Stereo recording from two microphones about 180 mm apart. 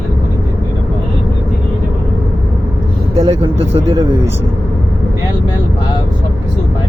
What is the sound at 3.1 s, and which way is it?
Vehicle, 35° right (ahead or behind).